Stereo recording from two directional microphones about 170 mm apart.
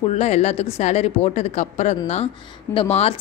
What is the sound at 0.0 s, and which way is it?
A woman's voice, 40° left (ahead or behind).